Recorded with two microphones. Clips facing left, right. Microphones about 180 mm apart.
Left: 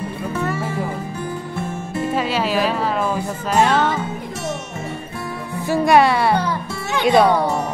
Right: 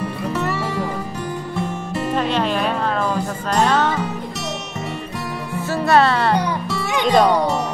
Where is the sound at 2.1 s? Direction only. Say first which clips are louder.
Even; 5° left (ahead or behind).